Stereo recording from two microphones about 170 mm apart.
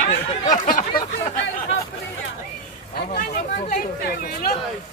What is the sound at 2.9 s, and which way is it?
Vehicle, 65° left (ahead or behind).